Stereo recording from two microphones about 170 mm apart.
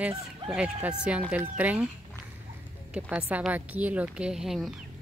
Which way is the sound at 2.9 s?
5° right (ahead or behind).